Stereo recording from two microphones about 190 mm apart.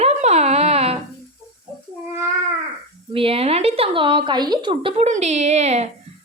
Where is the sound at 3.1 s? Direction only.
30° right (ahead or behind).